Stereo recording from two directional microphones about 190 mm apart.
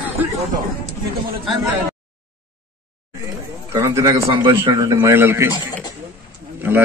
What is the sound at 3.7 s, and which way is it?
A man's voice, 15° right (ahead or behind).